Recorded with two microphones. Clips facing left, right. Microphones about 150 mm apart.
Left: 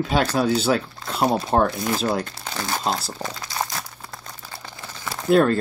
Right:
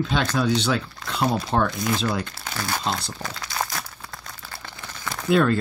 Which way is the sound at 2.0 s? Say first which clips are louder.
Left 2 dB; 40° left (ahead or behind).